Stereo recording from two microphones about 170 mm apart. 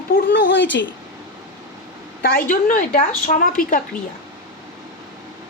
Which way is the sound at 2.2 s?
55° left (ahead or behind).